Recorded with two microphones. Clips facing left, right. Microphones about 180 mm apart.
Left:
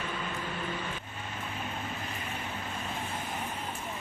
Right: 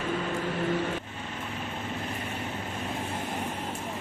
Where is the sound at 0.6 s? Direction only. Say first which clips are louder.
Right 8 dB; 75° right (ahead or behind).